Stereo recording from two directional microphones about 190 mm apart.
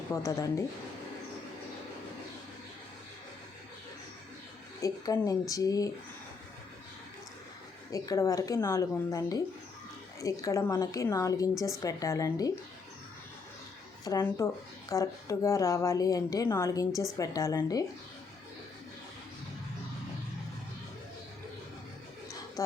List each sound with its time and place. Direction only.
0.1 s a woman's voice: 15° left (ahead or behind)
4.8 s a woman's voice: 15° left (ahead or behind)
7.9 s a woman's voice: 20° left (ahead or behind)
14.0 s a woman's voice: 15° left (ahead or behind)